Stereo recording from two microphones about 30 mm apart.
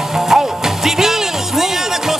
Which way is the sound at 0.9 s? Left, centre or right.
Centre.